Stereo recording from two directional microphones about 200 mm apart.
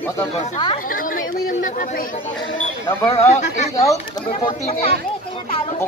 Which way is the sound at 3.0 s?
30° left (ahead or behind).